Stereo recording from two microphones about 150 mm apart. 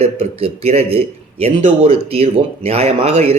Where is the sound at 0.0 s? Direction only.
40° right (ahead or behind).